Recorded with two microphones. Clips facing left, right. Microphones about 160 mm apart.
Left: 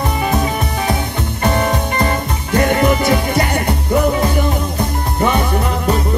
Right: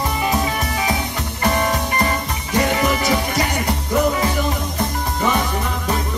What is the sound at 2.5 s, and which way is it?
Music, 55° left (ahead or behind).